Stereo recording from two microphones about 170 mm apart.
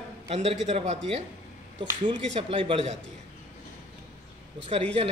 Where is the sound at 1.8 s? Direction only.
30° right (ahead or behind).